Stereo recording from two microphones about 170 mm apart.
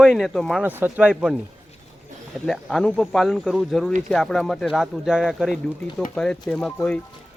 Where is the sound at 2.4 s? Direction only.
5° left (ahead or behind).